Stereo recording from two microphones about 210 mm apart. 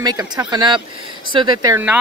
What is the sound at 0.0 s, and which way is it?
Speech, 20° right (ahead or behind).